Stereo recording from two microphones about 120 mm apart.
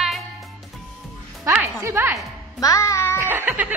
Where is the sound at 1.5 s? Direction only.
20° right (ahead or behind).